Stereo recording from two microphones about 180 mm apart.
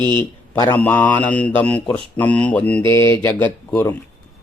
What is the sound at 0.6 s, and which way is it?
Speech, 10° left (ahead or behind).